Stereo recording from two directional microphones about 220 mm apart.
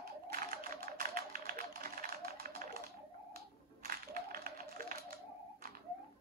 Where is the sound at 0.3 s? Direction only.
40° right (ahead or behind).